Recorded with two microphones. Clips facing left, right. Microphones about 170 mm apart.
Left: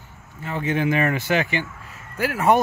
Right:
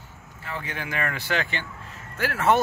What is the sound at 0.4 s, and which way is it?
Speech, 20° left (ahead or behind).